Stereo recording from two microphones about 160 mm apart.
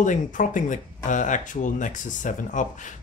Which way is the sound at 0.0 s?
50° left (ahead or behind).